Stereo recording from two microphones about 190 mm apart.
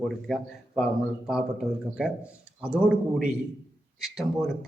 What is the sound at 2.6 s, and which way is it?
A man's voice, 5° right (ahead or behind).